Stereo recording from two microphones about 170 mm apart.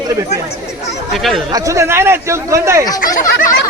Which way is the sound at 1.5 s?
20° right (ahead or behind).